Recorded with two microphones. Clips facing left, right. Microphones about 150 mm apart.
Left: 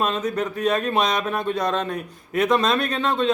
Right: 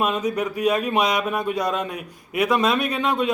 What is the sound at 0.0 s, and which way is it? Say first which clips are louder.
Speech: right 1 dB; 10° right (ahead or behind).